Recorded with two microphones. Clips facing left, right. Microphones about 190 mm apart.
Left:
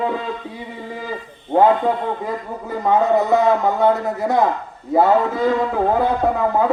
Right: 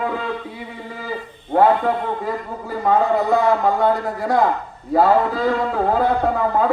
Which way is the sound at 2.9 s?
20° left (ahead or behind).